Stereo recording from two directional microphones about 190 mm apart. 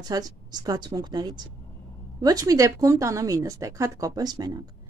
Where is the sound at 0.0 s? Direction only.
20° right (ahead or behind).